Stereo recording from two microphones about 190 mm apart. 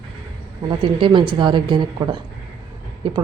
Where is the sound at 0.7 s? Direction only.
25° right (ahead or behind).